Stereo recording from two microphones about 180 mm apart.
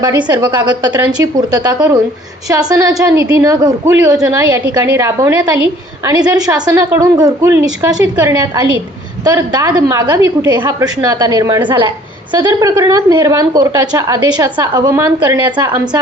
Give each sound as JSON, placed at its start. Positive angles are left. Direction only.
{"t": 0.3, "sound": "a woman's voice", "side_deg": -25}